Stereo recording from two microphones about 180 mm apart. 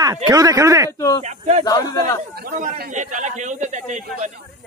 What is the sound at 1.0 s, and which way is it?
Speech, 20° left (ahead or behind).